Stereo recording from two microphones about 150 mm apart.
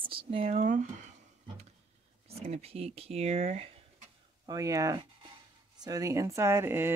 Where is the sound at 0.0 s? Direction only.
35° right (ahead or behind); by 0.8 s 55° right (ahead or behind).